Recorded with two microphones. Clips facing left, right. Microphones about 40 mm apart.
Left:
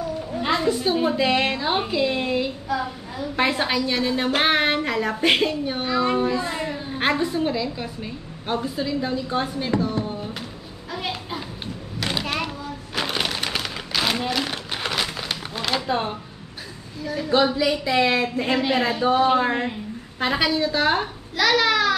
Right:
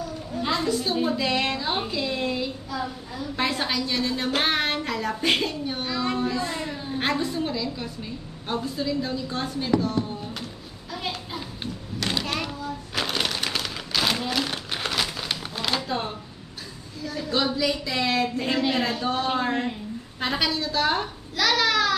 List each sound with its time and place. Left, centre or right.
0.3 s a woman's voice: centre
10.9 s a sound: centre
15.9 s a woman's voice: centre